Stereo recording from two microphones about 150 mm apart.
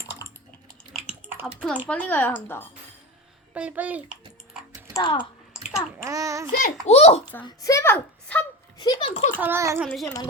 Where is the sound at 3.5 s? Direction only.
10° right (ahead or behind).